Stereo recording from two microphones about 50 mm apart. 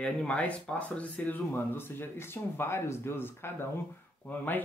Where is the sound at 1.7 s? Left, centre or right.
Left.